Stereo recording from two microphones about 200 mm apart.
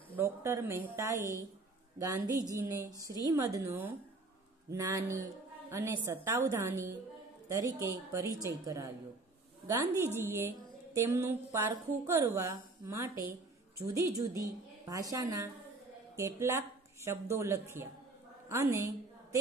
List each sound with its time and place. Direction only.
0.1 s a woman's voice: 15° right (ahead or behind)